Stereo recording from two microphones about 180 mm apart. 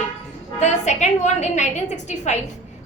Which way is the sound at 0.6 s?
40° left (ahead or behind).